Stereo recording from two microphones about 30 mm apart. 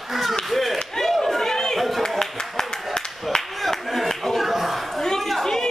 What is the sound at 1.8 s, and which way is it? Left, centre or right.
Speech, centre.